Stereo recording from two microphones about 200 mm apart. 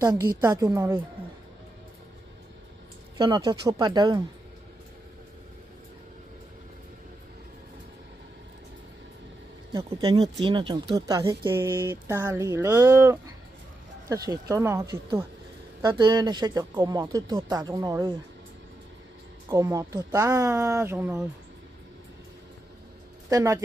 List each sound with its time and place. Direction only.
0.0 s speech: 20° right (ahead or behind)
3.2 s speech: 20° right (ahead or behind)
9.8 s speech: 30° right (ahead or behind)
19.5 s speech: 15° right (ahead or behind)
23.3 s speech: 15° right (ahead or behind)